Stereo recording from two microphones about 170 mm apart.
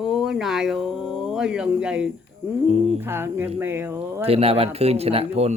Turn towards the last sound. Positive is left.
turn(degrees=-35)  # may be behind; listen again after turning